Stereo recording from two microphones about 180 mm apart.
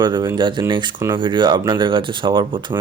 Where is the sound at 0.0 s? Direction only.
20° right (ahead or behind).